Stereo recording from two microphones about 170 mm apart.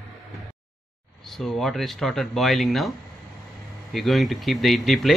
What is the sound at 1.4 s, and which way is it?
Speech, centre (ahead or behind).